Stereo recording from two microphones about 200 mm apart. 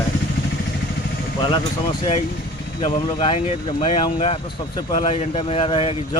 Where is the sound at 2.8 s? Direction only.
25° left (ahead or behind).